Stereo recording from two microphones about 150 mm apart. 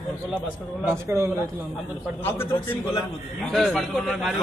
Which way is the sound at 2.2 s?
15° left (ahead or behind).